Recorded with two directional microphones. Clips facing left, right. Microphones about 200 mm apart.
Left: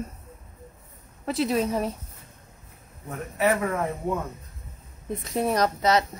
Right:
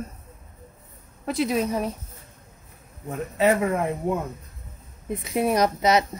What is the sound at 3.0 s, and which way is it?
Speech, 25° right (ahead or behind).